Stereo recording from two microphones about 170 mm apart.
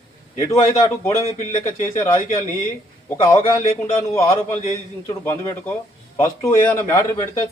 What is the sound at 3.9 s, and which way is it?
A man's voice, 15° left (ahead or behind).